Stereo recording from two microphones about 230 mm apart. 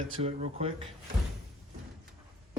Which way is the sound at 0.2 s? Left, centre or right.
Right.